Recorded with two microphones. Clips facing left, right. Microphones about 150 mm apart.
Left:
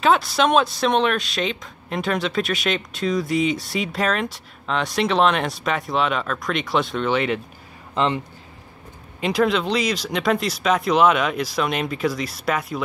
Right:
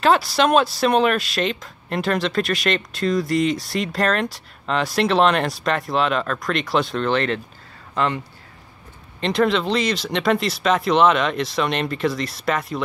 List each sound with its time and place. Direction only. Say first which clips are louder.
0.0 s speech: right 1 dB; centre (ahead or behind)
7.9 s speech: left 1 dB; 20° left (ahead or behind)
9.2 s speech: right 1 dB; centre (ahead or behind)